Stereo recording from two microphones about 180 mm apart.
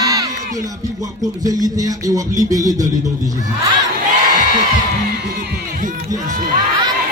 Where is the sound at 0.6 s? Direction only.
20° right (ahead or behind).